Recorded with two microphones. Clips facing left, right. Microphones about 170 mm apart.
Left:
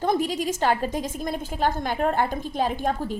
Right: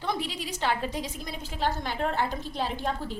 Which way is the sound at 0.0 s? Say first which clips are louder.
Left 8 dB; 45° left (ahead or behind).